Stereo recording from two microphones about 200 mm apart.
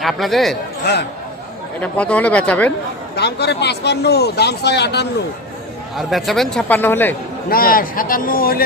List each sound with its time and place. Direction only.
0.0 s a man's voice: centre (ahead or behind)
1.8 s speech: 5° left (ahead or behind)
3.2 s speech: 55° left (ahead or behind)
6.0 s a man's voice: centre (ahead or behind)
7.5 s a man's voice: 45° left (ahead or behind)